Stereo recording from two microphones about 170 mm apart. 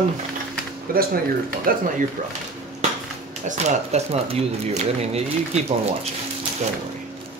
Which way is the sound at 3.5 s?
40° right (ahead or behind).